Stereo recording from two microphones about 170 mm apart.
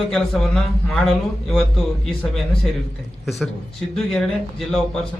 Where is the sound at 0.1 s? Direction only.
5° left (ahead or behind).